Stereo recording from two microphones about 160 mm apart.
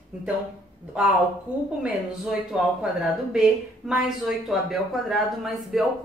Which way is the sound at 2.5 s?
5° right (ahead or behind).